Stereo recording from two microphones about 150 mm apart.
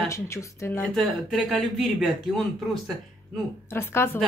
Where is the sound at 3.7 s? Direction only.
15° left (ahead or behind).